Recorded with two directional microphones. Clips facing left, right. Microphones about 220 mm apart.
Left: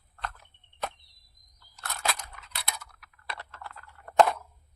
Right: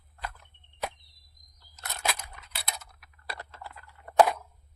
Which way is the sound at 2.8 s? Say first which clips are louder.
Left 2 dB; 25° right (ahead or behind).